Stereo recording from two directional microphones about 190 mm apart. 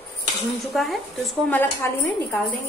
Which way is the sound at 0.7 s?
Centre (ahead or behind).